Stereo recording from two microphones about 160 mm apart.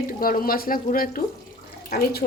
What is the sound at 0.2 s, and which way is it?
Speech, 65° left (ahead or behind).